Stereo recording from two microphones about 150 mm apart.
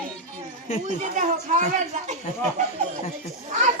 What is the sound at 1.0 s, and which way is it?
Speech, 55° right (ahead or behind).